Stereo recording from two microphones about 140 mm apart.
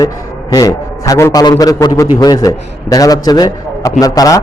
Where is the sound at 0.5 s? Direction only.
25° left (ahead or behind).